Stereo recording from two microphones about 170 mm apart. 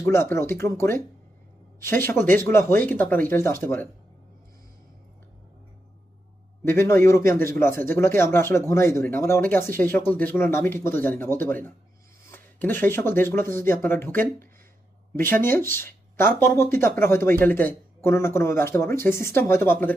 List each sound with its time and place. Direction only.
0.0 s speech: 15° left (ahead or behind)
6.7 s speech: 15° left (ahead or behind)
15.3 s speech: 15° left (ahead or behind)